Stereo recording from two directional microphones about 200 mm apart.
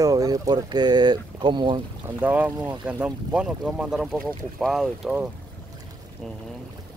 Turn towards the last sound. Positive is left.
turn(degrees=-5)  # may be behind; listen again after turning